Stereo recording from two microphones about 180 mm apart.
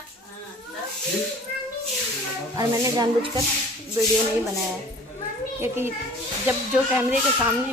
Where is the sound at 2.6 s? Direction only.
20° right (ahead or behind).